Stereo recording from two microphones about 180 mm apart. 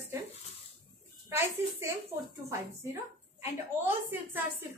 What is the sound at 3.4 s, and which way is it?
A woman's voice, 10° right (ahead or behind).